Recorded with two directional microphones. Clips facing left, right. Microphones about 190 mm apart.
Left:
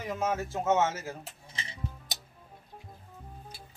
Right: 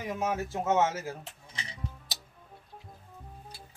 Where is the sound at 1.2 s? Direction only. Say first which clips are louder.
Left 1 dB; centre (ahead or behind).